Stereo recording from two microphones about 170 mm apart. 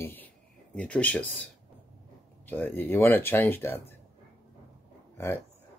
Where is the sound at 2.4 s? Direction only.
10° left (ahead or behind).